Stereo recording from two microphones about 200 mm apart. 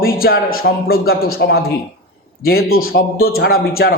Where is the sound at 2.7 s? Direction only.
90° left.